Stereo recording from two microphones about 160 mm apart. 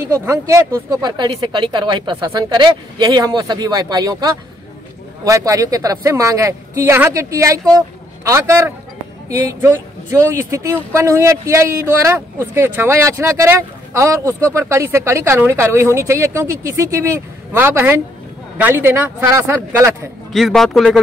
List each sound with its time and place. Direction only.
0.0 s a woman's voice: 20° right (ahead or behind)
20.3 s speech: centre (ahead or behind)